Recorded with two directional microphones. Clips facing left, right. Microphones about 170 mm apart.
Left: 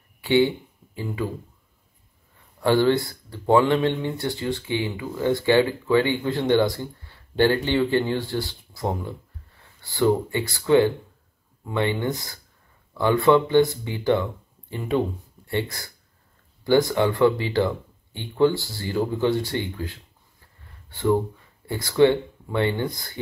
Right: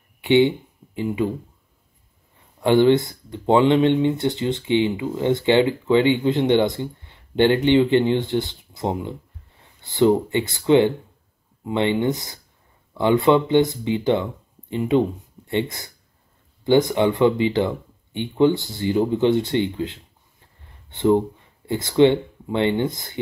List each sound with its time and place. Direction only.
0.2 s speech: 20° right (ahead or behind)
2.6 s speech: 20° right (ahead or behind)